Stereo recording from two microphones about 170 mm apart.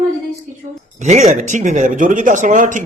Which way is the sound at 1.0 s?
45° right (ahead or behind).